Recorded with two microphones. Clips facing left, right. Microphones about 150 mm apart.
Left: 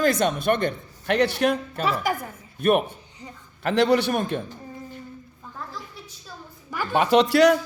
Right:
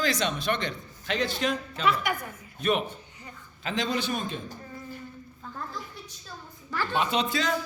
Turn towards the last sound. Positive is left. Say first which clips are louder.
# left 11 dB
turn(degrees=75)  # may be behind; listen again after turning